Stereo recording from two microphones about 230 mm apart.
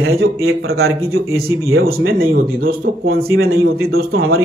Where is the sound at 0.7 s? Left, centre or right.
Right.